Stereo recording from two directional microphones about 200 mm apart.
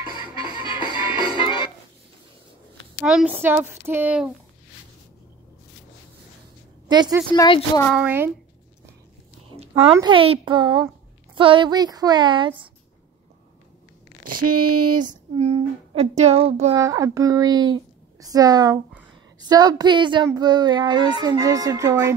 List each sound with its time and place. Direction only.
0.0 s music: 20° right (ahead or behind)
1.3 s music: 25° left (ahead or behind)
3.0 s speech: 5° right (ahead or behind)
6.9 s a woman's voice: 20° right (ahead or behind)
7.3 s a woman's voice: 20° left (ahead or behind)
7.9 s speech: 10° right (ahead or behind)
9.6 s a sound: 30° right (ahead or behind)
9.9 s speech: 25° right (ahead or behind)
15.0 s child singing: 40° right (ahead or behind)
15.5 s speech: 30° right (ahead or behind)
16.7 s speech: 15° right (ahead or behind)